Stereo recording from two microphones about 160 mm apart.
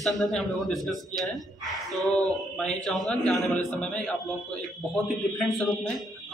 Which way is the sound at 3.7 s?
5° left (ahead or behind).